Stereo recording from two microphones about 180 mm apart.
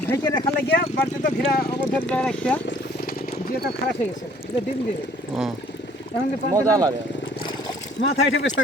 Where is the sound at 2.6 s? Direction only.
55° left (ahead or behind).